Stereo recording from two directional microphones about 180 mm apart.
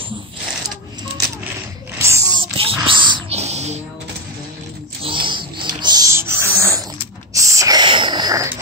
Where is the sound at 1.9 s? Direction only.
15° right (ahead or behind).